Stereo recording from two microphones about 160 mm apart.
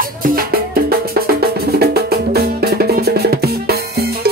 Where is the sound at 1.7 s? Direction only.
75° right (ahead or behind).